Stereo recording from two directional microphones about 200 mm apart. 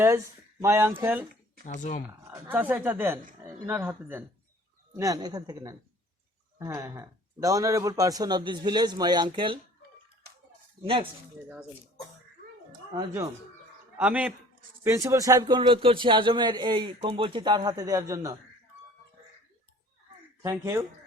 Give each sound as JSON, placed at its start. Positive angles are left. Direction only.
{"t": 0.0, "sound": "speech", "side_deg": -15}
{"t": 1.6, "sound": "speech", "side_deg": 40}
{"t": 2.3, "sound": "speech", "side_deg": -10}
{"t": 3.4, "sound": "a sound", "side_deg": -10}
{"t": 4.9, "sound": "a man's voice", "side_deg": -20}
{"t": 10.8, "sound": "a man's voice", "side_deg": -25}
{"t": 12.9, "sound": "a man's voice", "side_deg": -20}
{"t": 14.0, "sound": "a man's voice", "side_deg": -5}
{"t": 20.4, "sound": "speech", "side_deg": -15}